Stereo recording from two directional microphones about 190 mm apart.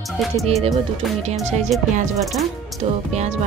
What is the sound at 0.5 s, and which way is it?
Speech, 35° right (ahead or behind).